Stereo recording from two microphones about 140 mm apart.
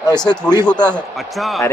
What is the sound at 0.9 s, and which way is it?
Speech, centre (ahead or behind).